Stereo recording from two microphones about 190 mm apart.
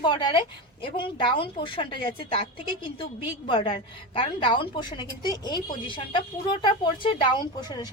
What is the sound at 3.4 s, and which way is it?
Speech, 25° left (ahead or behind).